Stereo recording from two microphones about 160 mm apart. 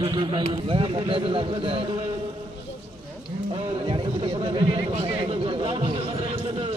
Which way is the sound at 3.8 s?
35° right (ahead or behind).